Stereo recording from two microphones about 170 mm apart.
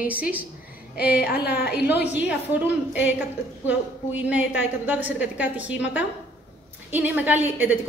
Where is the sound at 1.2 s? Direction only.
70° left (ahead or behind).